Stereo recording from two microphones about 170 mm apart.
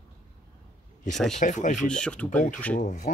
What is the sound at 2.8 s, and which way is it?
Speech, 45° left (ahead or behind).